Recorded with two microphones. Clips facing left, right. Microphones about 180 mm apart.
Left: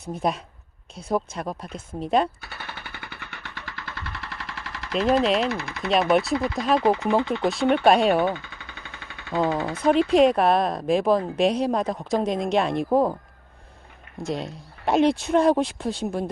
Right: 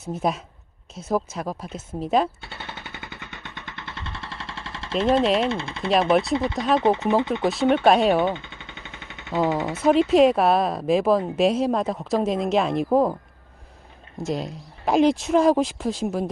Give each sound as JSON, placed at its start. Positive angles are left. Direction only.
{"t": 0.0, "sound": "speech", "side_deg": 0}
{"t": 2.4, "sound": "machine gun", "side_deg": -25}
{"t": 5.4, "sound": "speech", "side_deg": -25}
{"t": 7.4, "sound": "speech", "side_deg": 0}
{"t": 8.2, "sound": "a sound", "side_deg": -20}
{"t": 10.1, "sound": "speech", "side_deg": 0}
{"t": 14.2, "sound": "speech", "side_deg": 0}